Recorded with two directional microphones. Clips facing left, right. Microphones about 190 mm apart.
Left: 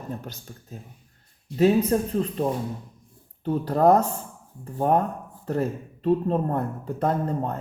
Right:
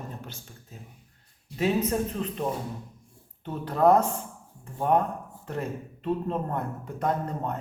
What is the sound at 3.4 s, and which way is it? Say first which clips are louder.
A man's voice: left 3 dB; 35° left (ahead or behind).